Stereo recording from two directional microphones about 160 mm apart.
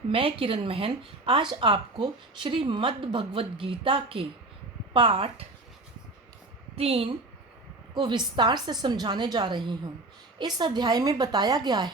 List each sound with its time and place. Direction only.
0.1 s speech: 35° right (ahead or behind)
6.7 s a woman's voice: 35° right (ahead or behind)